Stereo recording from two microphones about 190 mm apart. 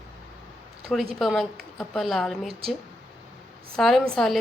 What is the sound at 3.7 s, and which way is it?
Speech, centre (ahead or behind).